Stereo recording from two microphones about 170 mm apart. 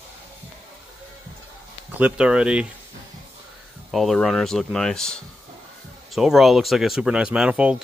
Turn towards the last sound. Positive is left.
turn(degrees=-5)  # may be behind; listen again after turning